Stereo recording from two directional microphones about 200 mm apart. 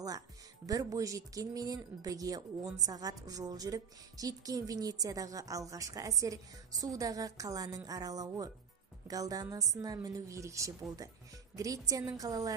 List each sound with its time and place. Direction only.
0.7 s speech: 15° right (ahead or behind)